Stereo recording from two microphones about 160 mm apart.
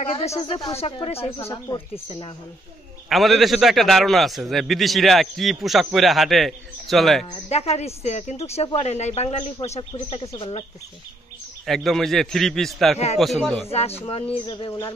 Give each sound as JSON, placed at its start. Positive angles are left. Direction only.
{"t": 0.1, "sound": "a woman's voice", "side_deg": 40}
{"t": 1.4, "sound": "speech", "side_deg": 20}
{"t": 2.0, "sound": "a woman's voice", "side_deg": 35}
{"t": 3.1, "sound": "a man's voice", "side_deg": 0}
{"t": 7.4, "sound": "a woman's voice", "side_deg": 40}
{"t": 11.6, "sound": "a man's voice", "side_deg": 0}
{"t": 13.7, "sound": "a woman's voice", "side_deg": 40}
{"t": 14.7, "sound": "a sound", "side_deg": 20}